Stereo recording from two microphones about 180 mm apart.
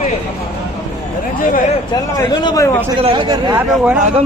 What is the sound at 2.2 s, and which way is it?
Speech, 20° left (ahead or behind).